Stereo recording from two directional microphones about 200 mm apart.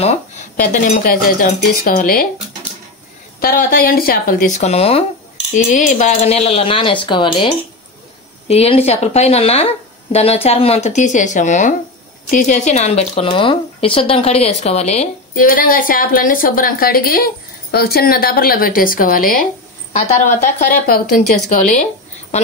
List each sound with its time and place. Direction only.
0.6 s a woman's voice: 45° left (ahead or behind)
3.3 s a woman's voice: 45° left (ahead or behind)